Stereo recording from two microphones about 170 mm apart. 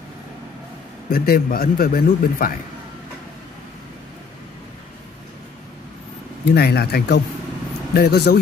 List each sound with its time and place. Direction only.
1.1 s a man's voice: 60° left (ahead or behind)
6.5 s speech: 70° left (ahead or behind)